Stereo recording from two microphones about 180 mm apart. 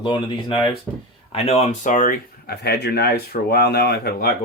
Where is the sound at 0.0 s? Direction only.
25° left (ahead or behind).